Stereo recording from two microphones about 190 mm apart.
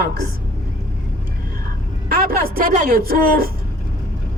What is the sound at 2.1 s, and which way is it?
Speech, 50° right (ahead or behind).